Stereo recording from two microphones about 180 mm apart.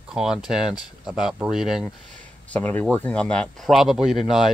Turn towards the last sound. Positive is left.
turn(degrees=0)  # may be behind; listen again after turning